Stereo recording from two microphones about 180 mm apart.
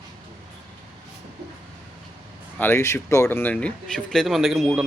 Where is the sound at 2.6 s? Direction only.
15° left (ahead or behind).